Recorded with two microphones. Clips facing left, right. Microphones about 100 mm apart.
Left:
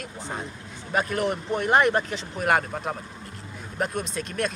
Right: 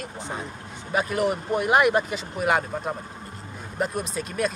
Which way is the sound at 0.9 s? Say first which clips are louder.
Right 1 dB; 5° right (ahead or behind).